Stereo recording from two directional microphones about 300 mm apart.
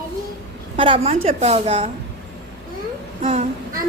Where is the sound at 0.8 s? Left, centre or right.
Centre.